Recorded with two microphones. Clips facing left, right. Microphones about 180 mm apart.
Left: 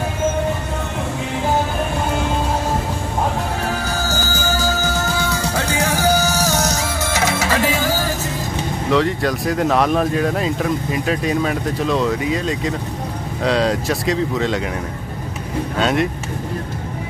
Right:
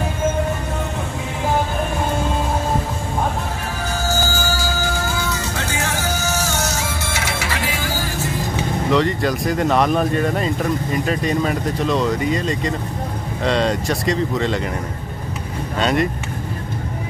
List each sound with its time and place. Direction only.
5.9 s music: 35° left (ahead or behind)
8.9 s speech: centre (ahead or behind)
15.8 s speech: centre (ahead or behind)